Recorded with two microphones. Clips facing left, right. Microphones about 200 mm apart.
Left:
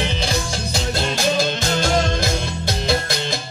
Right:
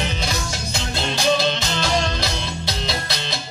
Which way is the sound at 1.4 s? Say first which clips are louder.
Left 2 dB; 50° left (ahead or behind).